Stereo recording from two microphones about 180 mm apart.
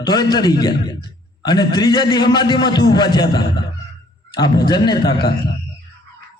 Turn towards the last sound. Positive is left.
turn(degrees=25)  # may be behind; listen again after turning